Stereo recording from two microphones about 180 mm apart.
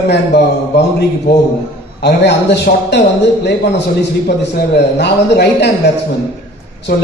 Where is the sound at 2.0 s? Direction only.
70° left (ahead or behind).